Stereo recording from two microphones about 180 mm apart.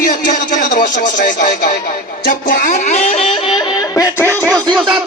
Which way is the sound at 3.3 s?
25° left (ahead or behind).